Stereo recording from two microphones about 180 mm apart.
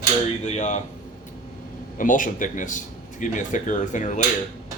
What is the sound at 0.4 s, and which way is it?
Speech, 40° left (ahead or behind).